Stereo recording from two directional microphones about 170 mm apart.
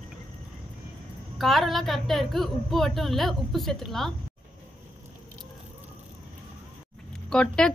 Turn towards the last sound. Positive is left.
turn(degrees=5)  # may be behind; listen again after turning